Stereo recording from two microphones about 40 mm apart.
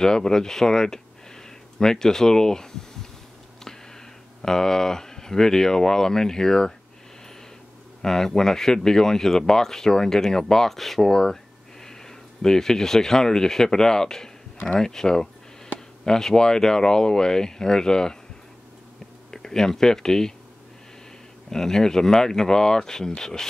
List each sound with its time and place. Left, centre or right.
0.0 s speech: centre
4.4 s speech: centre
8.0 s speech: centre
19.3 s speech: centre
21.5 s speech: centre